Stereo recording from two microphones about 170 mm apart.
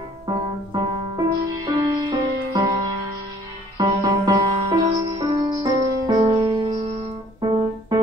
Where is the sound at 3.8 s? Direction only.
25° right (ahead or behind).